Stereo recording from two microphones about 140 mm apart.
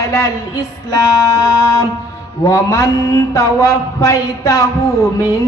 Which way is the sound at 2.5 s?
20° left (ahead or behind).